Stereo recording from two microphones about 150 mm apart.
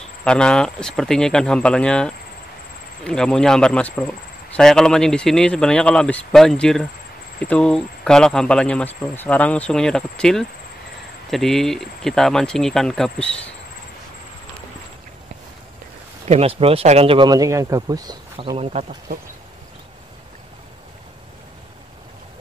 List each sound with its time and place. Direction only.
0.2 s speech: 5° left (ahead or behind)
16.3 s speech: 40° right (ahead or behind)
17.3 s speech: 20° right (ahead or behind)
18.6 s speech: 45° right (ahead or behind)